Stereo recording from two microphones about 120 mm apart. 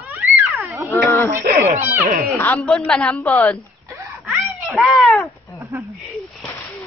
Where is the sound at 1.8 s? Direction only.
15° right (ahead or behind).